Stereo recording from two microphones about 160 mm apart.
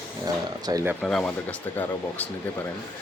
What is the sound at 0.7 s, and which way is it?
Speech, 25° right (ahead or behind).